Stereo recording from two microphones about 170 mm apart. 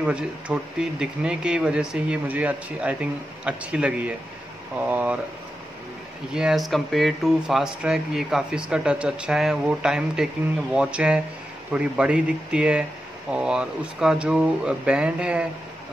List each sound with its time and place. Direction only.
0.0 s speech: 5° right (ahead or behind)
6.3 s speech: centre (ahead or behind)